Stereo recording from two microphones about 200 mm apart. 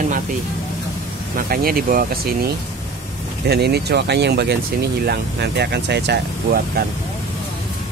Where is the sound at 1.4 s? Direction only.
50° right (ahead or behind).